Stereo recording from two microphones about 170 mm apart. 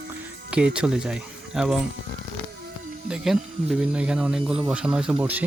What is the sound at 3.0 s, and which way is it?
Speech, 5° right (ahead or behind).